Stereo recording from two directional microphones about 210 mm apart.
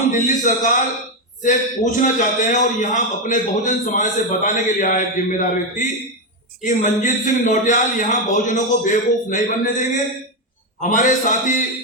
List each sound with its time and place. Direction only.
0.1 s a man's voice: 35° left (ahead or behind)